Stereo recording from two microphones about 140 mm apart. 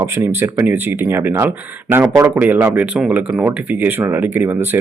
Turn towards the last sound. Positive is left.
turn(degrees=-15)  # may be behind; listen again after turning